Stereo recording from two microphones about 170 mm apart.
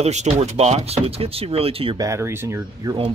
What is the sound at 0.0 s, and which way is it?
Speech, 40° right (ahead or behind).